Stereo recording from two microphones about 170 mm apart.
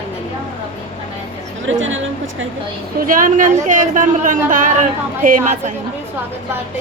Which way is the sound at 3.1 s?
50° right (ahead or behind).